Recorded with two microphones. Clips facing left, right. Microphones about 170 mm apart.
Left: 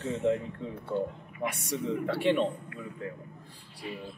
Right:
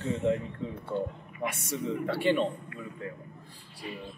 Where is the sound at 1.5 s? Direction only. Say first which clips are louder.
Left 1 dB; centre (ahead or behind).